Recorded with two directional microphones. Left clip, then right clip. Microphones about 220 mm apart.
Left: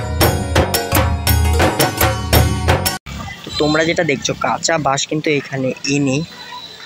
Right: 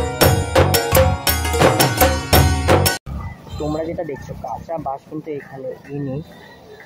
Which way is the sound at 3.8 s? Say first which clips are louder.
Left 9 dB; 20° left (ahead or behind).